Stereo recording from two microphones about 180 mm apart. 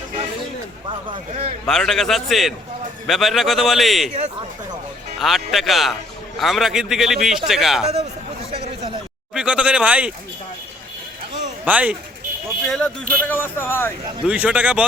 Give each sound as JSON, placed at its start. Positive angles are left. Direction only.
{"t": 0.9, "sound": "speech", "side_deg": -30}
{"t": 1.6, "sound": "a man's voice", "side_deg": 5}
{"t": 5.2, "sound": "a man's voice", "side_deg": 0}
{"t": 8.5, "sound": "a sound", "side_deg": -35}
{"t": 9.3, "sound": "speech", "side_deg": -5}
{"t": 11.6, "sound": "speech", "side_deg": -5}
{"t": 12.6, "sound": "speech", "side_deg": 5}
{"t": 14.3, "sound": "speech", "side_deg": -5}